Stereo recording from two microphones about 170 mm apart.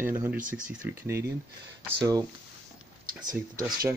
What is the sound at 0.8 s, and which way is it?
Speech, 15° right (ahead or behind).